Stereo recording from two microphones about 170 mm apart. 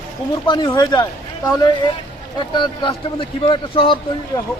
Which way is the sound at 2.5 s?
30° left (ahead or behind).